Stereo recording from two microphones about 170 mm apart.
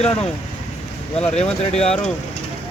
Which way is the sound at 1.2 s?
5° left (ahead or behind).